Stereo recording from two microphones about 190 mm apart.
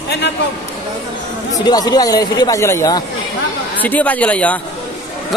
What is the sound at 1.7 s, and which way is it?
A man's voice, 20° left (ahead or behind).